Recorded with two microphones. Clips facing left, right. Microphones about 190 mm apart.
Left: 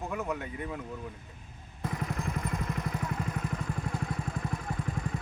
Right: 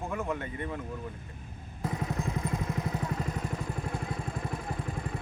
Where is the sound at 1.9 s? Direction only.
25° right (ahead or behind).